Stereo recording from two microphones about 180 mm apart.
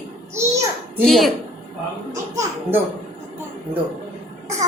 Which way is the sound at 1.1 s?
Centre (ahead or behind).